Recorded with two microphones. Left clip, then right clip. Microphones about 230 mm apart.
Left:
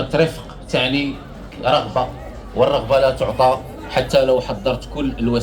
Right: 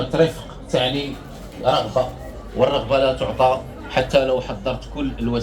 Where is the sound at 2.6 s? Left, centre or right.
Left.